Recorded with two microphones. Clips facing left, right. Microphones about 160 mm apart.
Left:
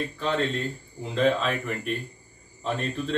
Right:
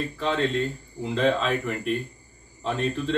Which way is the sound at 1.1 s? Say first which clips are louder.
Even; centre (ahead or behind).